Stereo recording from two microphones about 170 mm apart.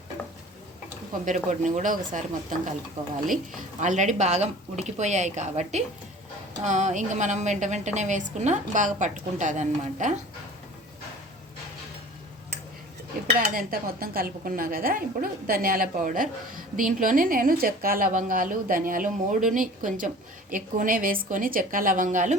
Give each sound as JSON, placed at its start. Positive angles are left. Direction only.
{"t": 1.2, "sound": "a woman's voice", "side_deg": -45}
{"t": 3.8, "sound": "a woman's voice", "side_deg": -45}
{"t": 13.4, "sound": "a woman's voice", "side_deg": -55}